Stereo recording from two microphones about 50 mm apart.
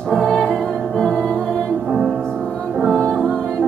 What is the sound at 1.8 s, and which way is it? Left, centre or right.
Music, centre.